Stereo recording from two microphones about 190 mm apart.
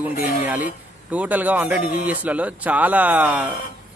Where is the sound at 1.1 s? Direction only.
10° right (ahead or behind).